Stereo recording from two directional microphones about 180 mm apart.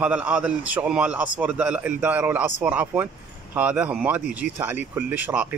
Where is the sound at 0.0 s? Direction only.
5° right (ahead or behind).